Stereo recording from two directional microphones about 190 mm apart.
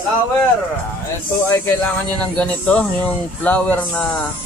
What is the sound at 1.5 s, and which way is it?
Speech, 10° left (ahead or behind).